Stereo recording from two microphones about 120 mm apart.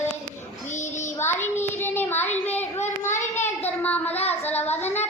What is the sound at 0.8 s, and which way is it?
Child singing, 90° left.